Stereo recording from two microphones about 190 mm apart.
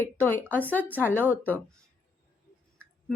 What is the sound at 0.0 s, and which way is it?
A woman's voice, 10° left (ahead or behind).